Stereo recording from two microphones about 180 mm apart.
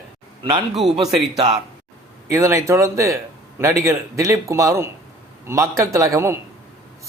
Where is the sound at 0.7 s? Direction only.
Centre (ahead or behind).